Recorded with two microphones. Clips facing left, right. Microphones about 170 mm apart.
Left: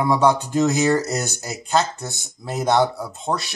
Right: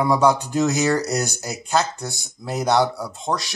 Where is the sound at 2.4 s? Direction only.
15° left (ahead or behind).